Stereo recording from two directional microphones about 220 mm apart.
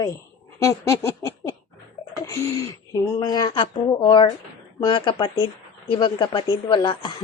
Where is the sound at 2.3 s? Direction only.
15° left (ahead or behind).